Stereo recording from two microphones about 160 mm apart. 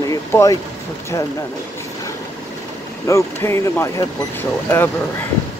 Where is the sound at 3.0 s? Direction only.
15° left (ahead or behind).